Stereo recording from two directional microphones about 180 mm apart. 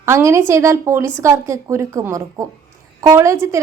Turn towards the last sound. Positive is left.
turn(degrees=-15)  # may be behind; listen again after turning